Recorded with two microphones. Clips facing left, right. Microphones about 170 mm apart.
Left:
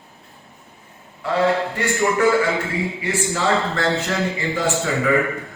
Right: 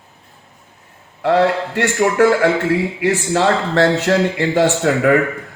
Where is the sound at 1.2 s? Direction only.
75° right (ahead or behind).